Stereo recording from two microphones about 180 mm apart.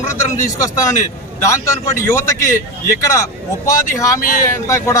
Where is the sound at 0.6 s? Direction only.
15° left (ahead or behind).